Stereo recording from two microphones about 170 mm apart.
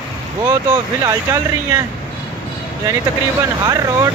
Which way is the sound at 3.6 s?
20° right (ahead or behind).